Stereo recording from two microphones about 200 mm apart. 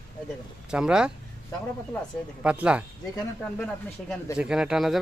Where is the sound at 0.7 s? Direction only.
5° right (ahead or behind).